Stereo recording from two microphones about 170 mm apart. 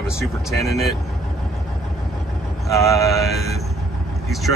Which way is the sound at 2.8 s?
20° left (ahead or behind).